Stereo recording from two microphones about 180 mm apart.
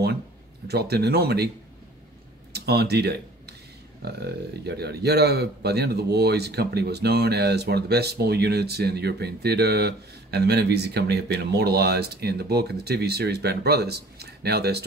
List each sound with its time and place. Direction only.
0.7 s a man's voice: 65° right (ahead or behind)
2.5 s a man's voice: 65° right (ahead or behind)